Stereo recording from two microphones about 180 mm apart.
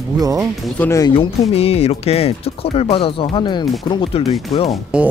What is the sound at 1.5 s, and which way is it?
Speech, 35° left (ahead or behind).